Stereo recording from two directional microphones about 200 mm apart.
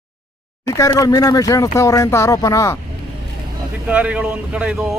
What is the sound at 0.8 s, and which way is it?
Speech, 15° left (ahead or behind).